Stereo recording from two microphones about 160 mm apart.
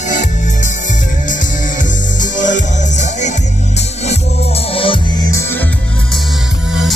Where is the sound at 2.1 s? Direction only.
50° left (ahead or behind); by 5.0 s 35° left (ahead or behind).